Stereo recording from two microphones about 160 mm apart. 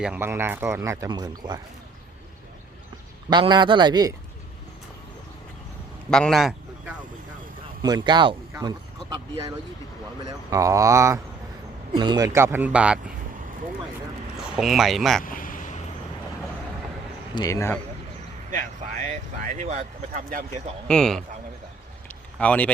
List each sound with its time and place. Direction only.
0.0 s speech: 10° right (ahead or behind)
3.2 s speech: 30° right (ahead or behind)
6.1 s a man's voice: 5° left (ahead or behind)
7.8 s speech: 25° right (ahead or behind); by 13.0 s 5° right (ahead or behind)
14.3 s speech: 5° right (ahead or behind)
15.2 s a sound: 60° left (ahead or behind)
17.3 s speech: 20° left (ahead or behind)
18.5 s speech: 55° right (ahead or behind)
20.8 s speech: 5° left (ahead or behind)
22.4 s speech: 10° left (ahead or behind)